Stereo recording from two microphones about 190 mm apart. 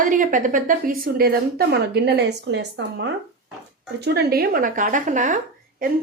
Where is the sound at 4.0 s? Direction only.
55° right (ahead or behind).